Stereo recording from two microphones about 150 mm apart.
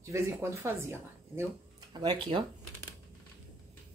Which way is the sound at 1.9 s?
30° right (ahead or behind).